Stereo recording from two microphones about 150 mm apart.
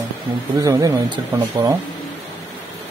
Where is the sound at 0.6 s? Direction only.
25° right (ahead or behind).